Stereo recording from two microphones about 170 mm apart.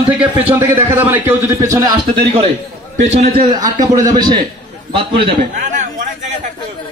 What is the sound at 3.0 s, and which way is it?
Speech, 40° right (ahead or behind).